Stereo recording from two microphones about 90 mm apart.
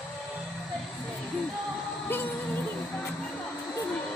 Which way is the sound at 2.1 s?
25° left (ahead or behind).